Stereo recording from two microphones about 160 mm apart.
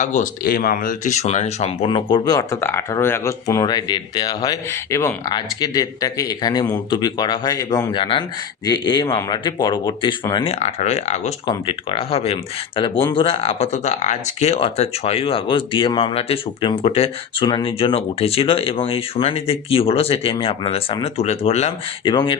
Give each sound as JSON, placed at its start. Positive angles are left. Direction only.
{"t": 0.0, "sound": "speech", "side_deg": 50}
{"t": 0.4, "sound": "speech", "side_deg": 70}
{"t": 1.9, "sound": "speech", "side_deg": 30}
{"t": 10.4, "sound": "speech", "side_deg": 45}
{"t": 11.4, "sound": "speech", "side_deg": 30}
{"t": 22.0, "sound": "speech", "side_deg": 30}